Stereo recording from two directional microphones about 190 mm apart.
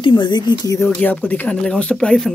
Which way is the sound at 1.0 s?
10° left (ahead or behind).